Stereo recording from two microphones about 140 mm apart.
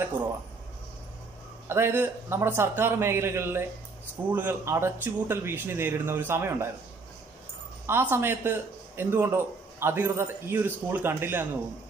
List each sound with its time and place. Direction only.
1.7 s speech: 15° right (ahead or behind)
7.8 s speech: 15° right (ahead or behind)